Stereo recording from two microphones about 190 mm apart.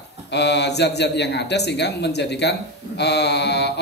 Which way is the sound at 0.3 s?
60° left (ahead or behind).